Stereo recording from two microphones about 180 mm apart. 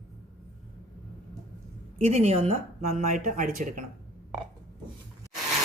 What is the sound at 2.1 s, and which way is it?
Speech, 35° right (ahead or behind).